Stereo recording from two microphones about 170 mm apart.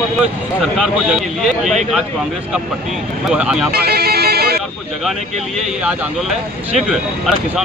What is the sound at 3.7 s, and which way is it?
Bagpipes, 70° right (ahead or behind).